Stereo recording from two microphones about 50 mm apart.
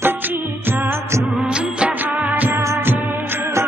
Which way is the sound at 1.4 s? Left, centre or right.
Right.